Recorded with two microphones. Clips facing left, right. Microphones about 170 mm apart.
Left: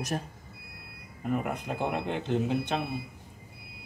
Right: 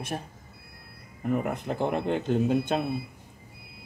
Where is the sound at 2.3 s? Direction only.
50° right (ahead or behind).